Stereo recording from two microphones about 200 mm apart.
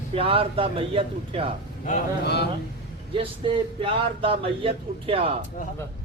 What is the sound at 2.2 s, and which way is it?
Speech, 55° left (ahead or behind).